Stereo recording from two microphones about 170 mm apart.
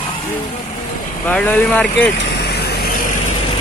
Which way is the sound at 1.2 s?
10° left (ahead or behind).